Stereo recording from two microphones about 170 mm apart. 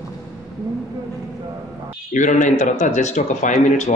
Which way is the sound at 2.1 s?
45° left (ahead or behind).